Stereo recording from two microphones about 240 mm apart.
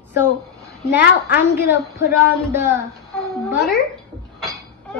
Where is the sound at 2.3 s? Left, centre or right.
Centre.